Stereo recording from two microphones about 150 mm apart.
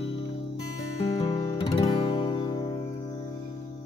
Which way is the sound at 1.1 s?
25° left (ahead or behind).